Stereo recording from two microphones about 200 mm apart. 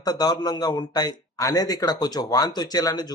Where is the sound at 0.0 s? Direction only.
20° left (ahead or behind).